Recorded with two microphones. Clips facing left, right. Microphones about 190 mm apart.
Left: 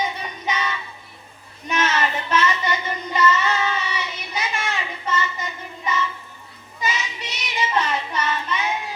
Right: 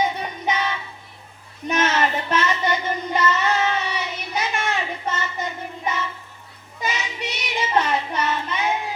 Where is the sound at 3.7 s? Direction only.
55° right (ahead or behind).